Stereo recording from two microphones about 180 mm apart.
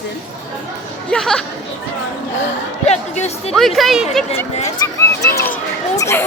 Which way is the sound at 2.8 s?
35° left (ahead or behind).